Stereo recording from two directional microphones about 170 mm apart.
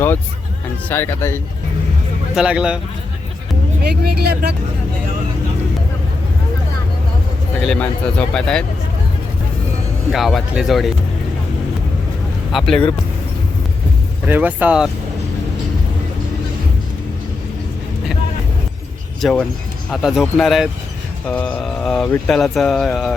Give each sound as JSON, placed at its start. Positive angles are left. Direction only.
{"t": 0.9, "sound": "speech", "side_deg": 15}
{"t": 2.3, "sound": "speech", "side_deg": -5}
{"t": 3.8, "sound": "speech", "side_deg": -70}
{"t": 7.6, "sound": "speech", "side_deg": 5}
{"t": 10.1, "sound": "speech", "side_deg": 0}
{"t": 12.5, "sound": "speech", "side_deg": 0}
{"t": 14.3, "sound": "speech", "side_deg": -10}
{"t": 19.2, "sound": "speech", "side_deg": 10}